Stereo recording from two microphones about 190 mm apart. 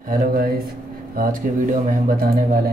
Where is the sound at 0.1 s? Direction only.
50° right (ahead or behind).